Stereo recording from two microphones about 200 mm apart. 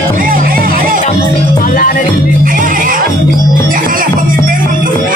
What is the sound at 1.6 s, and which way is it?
Music, 40° left (ahead or behind).